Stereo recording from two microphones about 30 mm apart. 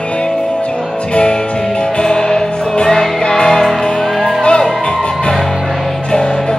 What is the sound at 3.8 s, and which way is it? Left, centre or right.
Music, left.